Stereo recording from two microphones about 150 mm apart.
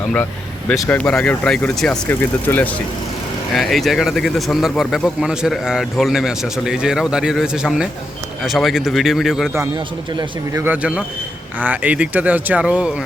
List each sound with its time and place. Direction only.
0.7 s speech: 5° left (ahead or behind)
3.5 s speech: centre (ahead or behind)
10.2 s speech: 20° right (ahead or behind)
10.7 s speech: 10° right (ahead or behind)